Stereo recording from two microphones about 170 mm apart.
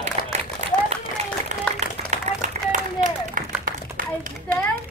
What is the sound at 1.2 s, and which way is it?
Applause, 40° right (ahead or behind).